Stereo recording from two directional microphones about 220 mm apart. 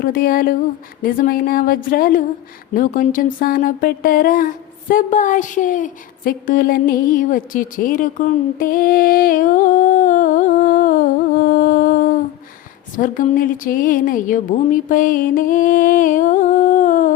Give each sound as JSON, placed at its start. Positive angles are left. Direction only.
{"t": 0.0, "sound": "a woman's voice", "side_deg": 40}